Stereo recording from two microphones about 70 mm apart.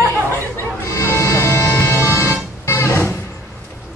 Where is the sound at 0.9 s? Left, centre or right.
Left.